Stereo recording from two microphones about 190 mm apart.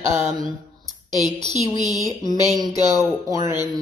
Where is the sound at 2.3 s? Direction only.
20° left (ahead or behind).